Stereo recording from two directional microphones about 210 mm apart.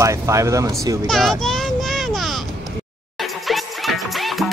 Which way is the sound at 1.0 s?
Centre (ahead or behind).